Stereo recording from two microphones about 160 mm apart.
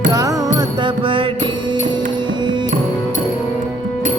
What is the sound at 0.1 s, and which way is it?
Music, 20° right (ahead or behind).